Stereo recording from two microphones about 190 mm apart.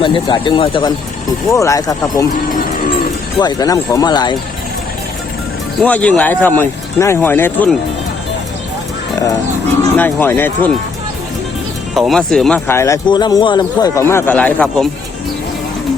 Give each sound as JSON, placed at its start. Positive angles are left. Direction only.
{"t": 0.0, "sound": "speech", "side_deg": 25}
{"t": 3.3, "sound": "speech", "side_deg": 20}
{"t": 5.8, "sound": "speech", "side_deg": 5}
{"t": 10.0, "sound": "speech", "side_deg": 10}
{"t": 11.9, "sound": "speech", "side_deg": 0}